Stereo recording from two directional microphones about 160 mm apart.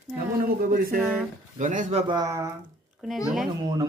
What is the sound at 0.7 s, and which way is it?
Speech, 65° right (ahead or behind).